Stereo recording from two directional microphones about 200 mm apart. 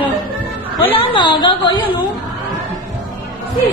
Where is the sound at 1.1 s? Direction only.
20° left (ahead or behind).